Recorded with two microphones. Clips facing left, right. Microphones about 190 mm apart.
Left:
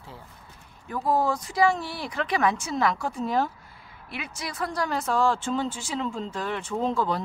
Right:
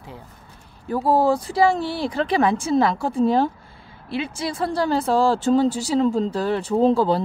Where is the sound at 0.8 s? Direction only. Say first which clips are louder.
Right 6 dB; 30° right (ahead or behind).